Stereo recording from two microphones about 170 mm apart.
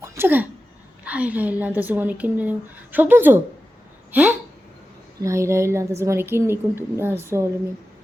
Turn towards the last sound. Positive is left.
turn(degrees=-15)  # may be behind; listen again after turning